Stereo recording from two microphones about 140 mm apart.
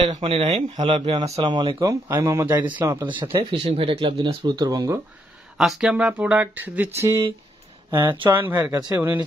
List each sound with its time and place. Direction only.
0.1 s speech: 40° right (ahead or behind)
1.8 s speech: 25° right (ahead or behind)
3.6 s speech: 40° right (ahead or behind)
4.6 s speech: 25° right (ahead or behind)
5.6 s speech: 5° right (ahead or behind)
7.9 s speech: 35° right (ahead or behind)
8.2 s speech: 15° right (ahead or behind)